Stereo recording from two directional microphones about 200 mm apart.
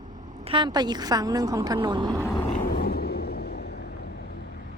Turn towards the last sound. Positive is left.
turn(degrees=55)  # may be behind; listen again after turning